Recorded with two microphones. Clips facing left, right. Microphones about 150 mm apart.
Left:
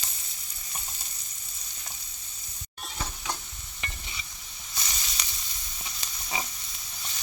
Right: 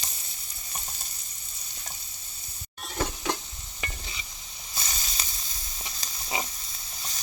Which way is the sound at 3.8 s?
25° right (ahead or behind).